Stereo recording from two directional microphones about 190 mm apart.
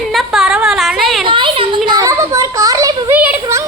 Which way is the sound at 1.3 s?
25° right (ahead or behind).